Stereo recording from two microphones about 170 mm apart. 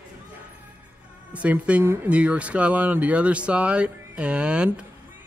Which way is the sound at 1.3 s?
10° right (ahead or behind).